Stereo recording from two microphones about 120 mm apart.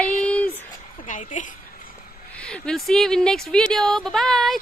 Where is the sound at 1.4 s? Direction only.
90° left.